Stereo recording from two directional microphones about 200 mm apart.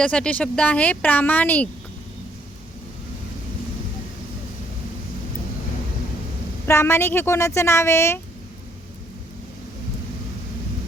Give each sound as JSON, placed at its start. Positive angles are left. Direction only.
{"t": 0.0, "sound": "speech", "side_deg": 5}
{"t": 6.7, "sound": "speech", "side_deg": 15}